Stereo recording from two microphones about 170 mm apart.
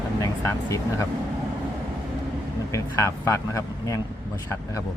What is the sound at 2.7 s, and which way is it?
A man's voice, 15° left (ahead or behind).